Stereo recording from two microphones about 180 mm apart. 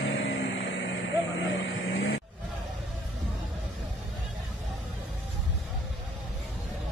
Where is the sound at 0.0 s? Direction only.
90° left.